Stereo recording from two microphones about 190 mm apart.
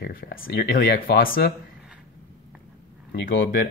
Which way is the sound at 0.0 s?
50° left (ahead or behind).